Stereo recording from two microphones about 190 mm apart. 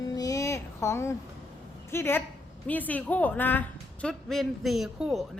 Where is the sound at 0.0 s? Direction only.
20° left (ahead or behind).